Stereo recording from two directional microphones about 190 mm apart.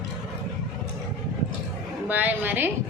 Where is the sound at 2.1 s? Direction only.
10° right (ahead or behind).